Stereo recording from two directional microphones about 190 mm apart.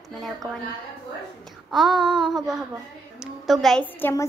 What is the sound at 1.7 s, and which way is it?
Child singing, centre (ahead or behind).